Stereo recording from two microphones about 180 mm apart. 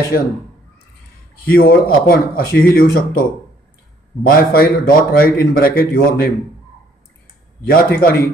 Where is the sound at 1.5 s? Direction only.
55° left (ahead or behind).